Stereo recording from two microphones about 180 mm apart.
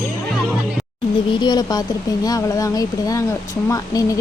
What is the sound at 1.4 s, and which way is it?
Speech, 20° left (ahead or behind).